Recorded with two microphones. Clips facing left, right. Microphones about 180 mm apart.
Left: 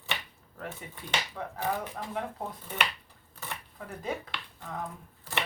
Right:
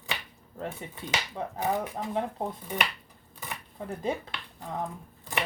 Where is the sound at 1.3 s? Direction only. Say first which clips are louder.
Right 5 dB; 25° right (ahead or behind).